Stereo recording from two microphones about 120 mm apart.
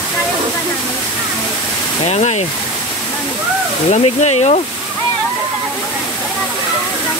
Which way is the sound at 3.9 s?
70° left (ahead or behind).